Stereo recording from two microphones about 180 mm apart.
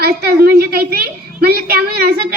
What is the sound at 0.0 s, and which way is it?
A woman's voice, 60° right (ahead or behind).